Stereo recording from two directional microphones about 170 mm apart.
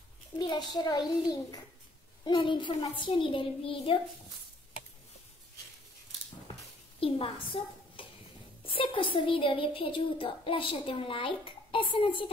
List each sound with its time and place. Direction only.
0.7 s a child's voice: 25° left (ahead or behind)
7.0 s a child's voice: 30° left (ahead or behind)
8.7 s child singing: 30° left (ahead or behind)